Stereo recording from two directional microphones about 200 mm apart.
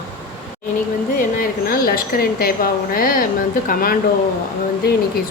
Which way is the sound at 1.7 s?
45° left (ahead or behind).